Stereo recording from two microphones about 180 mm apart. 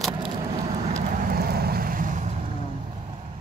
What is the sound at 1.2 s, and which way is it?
Vehicle, 55° right (ahead or behind).